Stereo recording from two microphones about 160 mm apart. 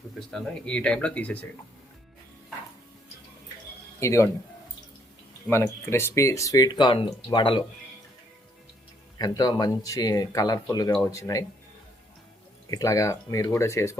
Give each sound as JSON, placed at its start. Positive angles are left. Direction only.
{"t": 0.2, "sound": "speech", "side_deg": 5}
{"t": 4.0, "sound": "speech", "side_deg": 20}
{"t": 5.5, "sound": "speech", "side_deg": 15}
{"t": 9.1, "sound": "speech", "side_deg": 25}
{"t": 12.7, "sound": "speech", "side_deg": 20}